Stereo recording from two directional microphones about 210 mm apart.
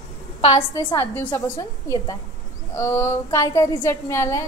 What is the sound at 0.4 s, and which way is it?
Speech, 25° left (ahead or behind).